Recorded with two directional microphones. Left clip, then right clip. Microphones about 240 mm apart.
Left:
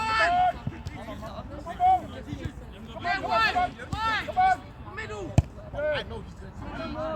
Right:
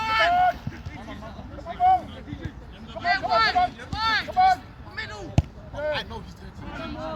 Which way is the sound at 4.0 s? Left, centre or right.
Right.